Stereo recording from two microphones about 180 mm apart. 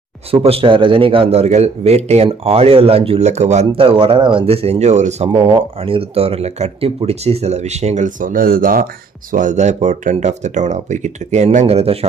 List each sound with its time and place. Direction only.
0.3 s speech: 30° right (ahead or behind)